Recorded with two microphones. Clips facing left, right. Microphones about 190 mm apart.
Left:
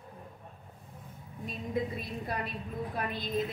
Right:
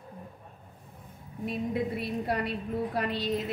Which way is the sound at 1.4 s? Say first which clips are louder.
Right 4 dB; 70° right (ahead or behind).